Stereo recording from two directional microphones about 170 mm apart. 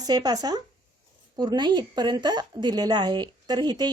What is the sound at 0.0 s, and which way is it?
A woman's voice, 25° right (ahead or behind).